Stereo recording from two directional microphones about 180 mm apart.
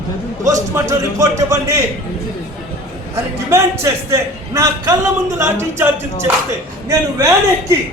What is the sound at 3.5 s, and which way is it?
A man's voice, 15° right (ahead or behind).